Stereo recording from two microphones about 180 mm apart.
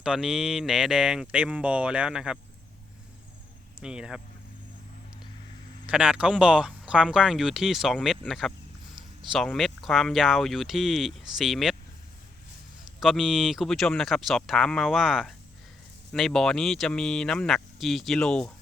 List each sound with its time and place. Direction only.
0.0 s speech: 5° right (ahead or behind)
3.8 s speech: 5° right (ahead or behind)
5.8 s speech: 5° right (ahead or behind)
13.0 s speech: centre (ahead or behind)